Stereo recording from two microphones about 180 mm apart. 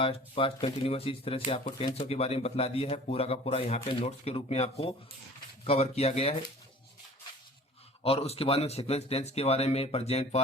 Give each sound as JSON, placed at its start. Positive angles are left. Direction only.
{"t": 0.0, "sound": "speech", "side_deg": 30}
{"t": 8.0, "sound": "speech", "side_deg": 35}